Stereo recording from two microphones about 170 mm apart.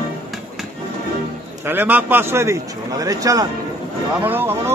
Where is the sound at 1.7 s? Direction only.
10° right (ahead or behind).